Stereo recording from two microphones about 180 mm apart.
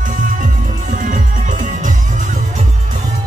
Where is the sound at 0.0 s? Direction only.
45° right (ahead or behind).